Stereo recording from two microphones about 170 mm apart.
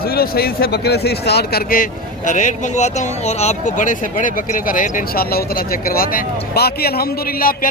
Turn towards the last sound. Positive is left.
turn(degrees=60)  # may be behind; listen again after turning